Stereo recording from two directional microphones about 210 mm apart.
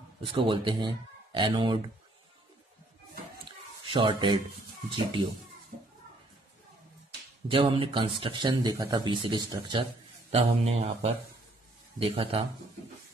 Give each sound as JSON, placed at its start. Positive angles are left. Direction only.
{"t": 0.2, "sound": "speech", "side_deg": -25}
{"t": 3.8, "sound": "speech", "side_deg": -25}
{"t": 7.4, "sound": "speech", "side_deg": -25}